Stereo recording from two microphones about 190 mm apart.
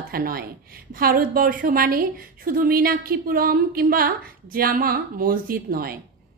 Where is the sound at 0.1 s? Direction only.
50° right (ahead or behind).